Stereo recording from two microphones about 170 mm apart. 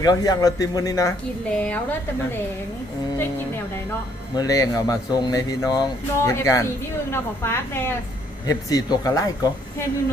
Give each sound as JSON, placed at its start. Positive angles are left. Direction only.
{"t": 0.0, "sound": "speech", "side_deg": 20}
{"t": 1.5, "sound": "a woman's voice", "side_deg": 5}
{"t": 4.4, "sound": "a woman's voice", "side_deg": 20}